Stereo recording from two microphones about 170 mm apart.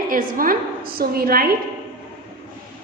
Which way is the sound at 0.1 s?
55° right (ahead or behind).